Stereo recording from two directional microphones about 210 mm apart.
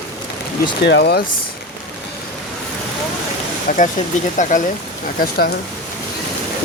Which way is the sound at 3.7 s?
45° left (ahead or behind).